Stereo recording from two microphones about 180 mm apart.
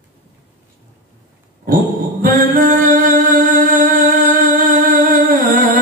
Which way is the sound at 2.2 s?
50° right (ahead or behind).